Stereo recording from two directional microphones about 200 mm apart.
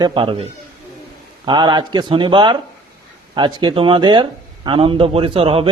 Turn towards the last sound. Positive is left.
turn(degrees=-25)  # may be behind; listen again after turning